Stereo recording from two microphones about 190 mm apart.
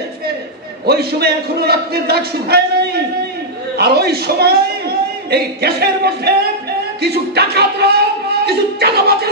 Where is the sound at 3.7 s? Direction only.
55° right (ahead or behind).